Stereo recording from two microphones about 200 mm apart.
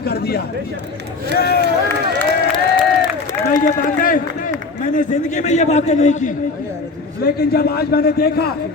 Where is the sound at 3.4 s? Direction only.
40° left (ahead or behind).